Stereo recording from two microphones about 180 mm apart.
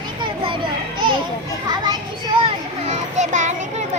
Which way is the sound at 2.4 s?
40° right (ahead or behind).